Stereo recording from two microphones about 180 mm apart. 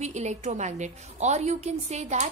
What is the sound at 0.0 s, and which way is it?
A woman's voice, 40° right (ahead or behind).